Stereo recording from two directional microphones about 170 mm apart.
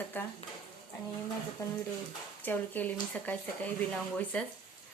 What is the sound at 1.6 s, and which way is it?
Speech, 20° left (ahead or behind).